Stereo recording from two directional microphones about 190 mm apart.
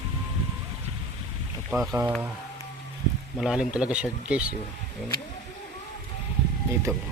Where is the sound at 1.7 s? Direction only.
5° right (ahead or behind).